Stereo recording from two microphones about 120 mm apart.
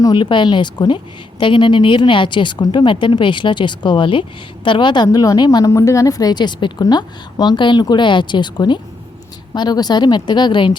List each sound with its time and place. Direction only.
0.0 s a woman's voice: 40° left (ahead or behind)
5.0 s a woman's voice: 30° left (ahead or behind)